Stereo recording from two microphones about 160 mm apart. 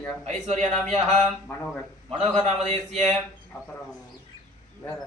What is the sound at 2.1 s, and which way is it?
A man's voice, 40° right (ahead or behind).